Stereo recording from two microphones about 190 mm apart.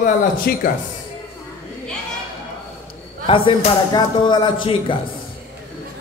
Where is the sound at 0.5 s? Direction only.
55° left (ahead or behind).